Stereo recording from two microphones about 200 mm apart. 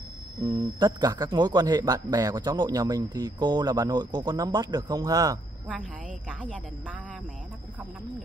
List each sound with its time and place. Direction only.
0.4 s a man's voice: 20° right (ahead or behind)
5.7 s a woman's voice: 5° right (ahead or behind)